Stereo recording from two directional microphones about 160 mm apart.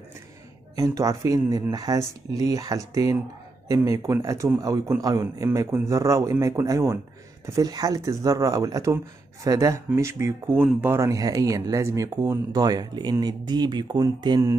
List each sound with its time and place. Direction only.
0.7 s speech: 20° right (ahead or behind)